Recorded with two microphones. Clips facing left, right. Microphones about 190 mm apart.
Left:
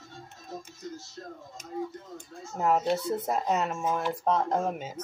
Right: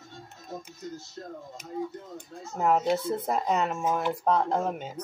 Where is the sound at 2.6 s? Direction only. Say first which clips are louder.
Right 1 dB; centre (ahead or behind).